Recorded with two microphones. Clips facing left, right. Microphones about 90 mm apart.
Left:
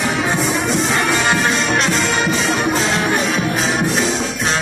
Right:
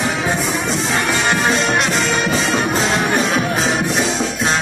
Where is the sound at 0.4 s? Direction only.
Centre (ahead or behind).